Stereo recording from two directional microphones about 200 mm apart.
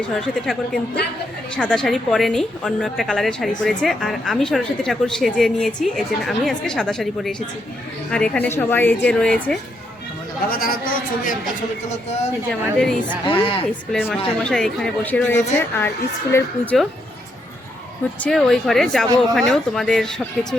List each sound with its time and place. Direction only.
0.1 s a woman's voice: centre (ahead or behind)
10.5 s a woman's voice: 45° left (ahead or behind)
12.5 s a woman's voice: centre (ahead or behind)
13.2 s speech: 25° left (ahead or behind)
13.9 s a woman's voice: 5° left (ahead or behind)
18.2 s a woman's voice: centre (ahead or behind)